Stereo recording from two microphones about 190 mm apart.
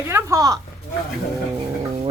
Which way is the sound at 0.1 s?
15° right (ahead or behind).